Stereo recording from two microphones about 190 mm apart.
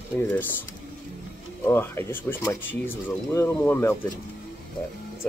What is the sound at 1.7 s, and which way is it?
Speech, 10° left (ahead or behind).